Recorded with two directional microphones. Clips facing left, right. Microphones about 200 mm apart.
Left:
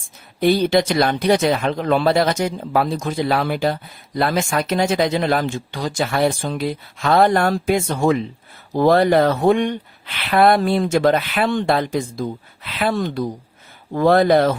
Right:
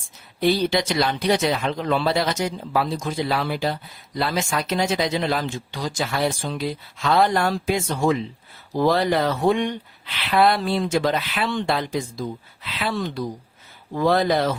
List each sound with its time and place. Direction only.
0.3 s speech: 55° left (ahead or behind)